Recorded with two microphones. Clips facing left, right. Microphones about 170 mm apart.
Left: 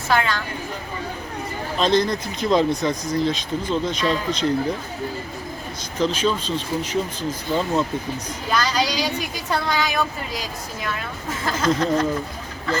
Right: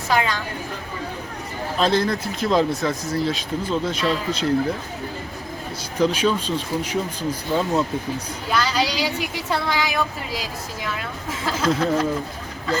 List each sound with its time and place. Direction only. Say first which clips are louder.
0.1 s speech: even; 15° right (ahead or behind)
1.8 s speech: left 1 dB; 5° right (ahead or behind)
6.0 s speech: right 2 dB; 10° right (ahead or behind)
8.6 s vehicle: even; 5° right (ahead or behind)
9.5 s speech: left 1 dB; 5° right (ahead or behind)